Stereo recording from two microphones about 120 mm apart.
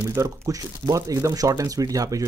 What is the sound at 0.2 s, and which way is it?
Speech, 30° right (ahead or behind).